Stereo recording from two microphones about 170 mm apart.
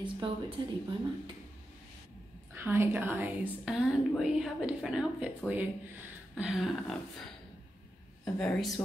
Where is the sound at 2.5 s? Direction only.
15° right (ahead or behind).